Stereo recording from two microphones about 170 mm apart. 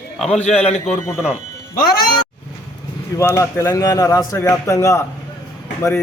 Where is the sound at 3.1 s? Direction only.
15° left (ahead or behind).